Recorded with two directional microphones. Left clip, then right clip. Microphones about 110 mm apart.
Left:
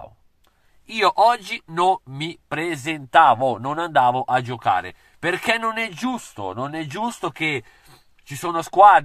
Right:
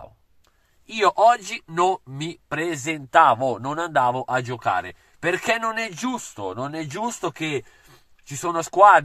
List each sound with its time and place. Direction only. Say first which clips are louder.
1.1 s speech: even; 20° left (ahead or behind)